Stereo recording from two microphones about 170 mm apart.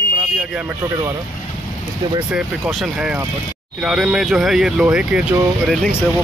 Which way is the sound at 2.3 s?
Centre (ahead or behind).